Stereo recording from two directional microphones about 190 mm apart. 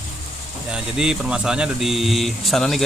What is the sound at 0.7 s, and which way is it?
Speech, 5° right (ahead or behind).